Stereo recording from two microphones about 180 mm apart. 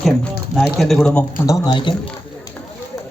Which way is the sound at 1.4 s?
20° left (ahead or behind).